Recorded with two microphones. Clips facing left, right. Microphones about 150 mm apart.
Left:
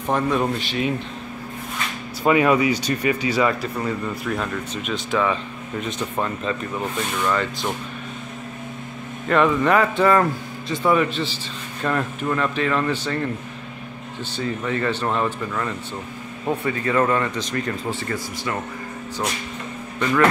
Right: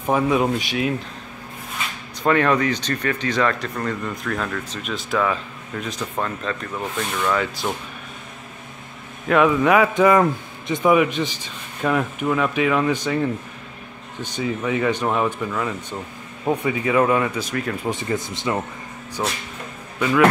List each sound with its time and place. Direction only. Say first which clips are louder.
0.0 s speech: right 2 dB; 10° right (ahead or behind)
2.2 s speech: left 1 dB; 10° left (ahead or behind)
9.3 s speech: right 2 dB; 5° right (ahead or behind)
17.8 s speech: right 3 dB; 20° right (ahead or behind)
20.0 s speech: right 2 dB; 5° right (ahead or behind)